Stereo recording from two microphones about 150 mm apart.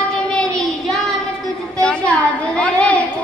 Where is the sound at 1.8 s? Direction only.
5° left (ahead or behind).